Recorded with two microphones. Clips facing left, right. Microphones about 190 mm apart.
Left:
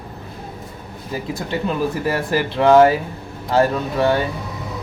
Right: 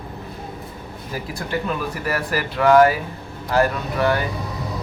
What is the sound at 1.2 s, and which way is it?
Speech, 25° left (ahead or behind).